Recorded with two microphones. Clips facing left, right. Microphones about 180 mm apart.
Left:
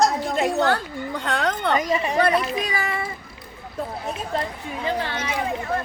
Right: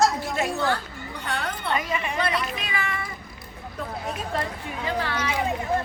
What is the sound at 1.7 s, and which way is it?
Speech, 40° left (ahead or behind).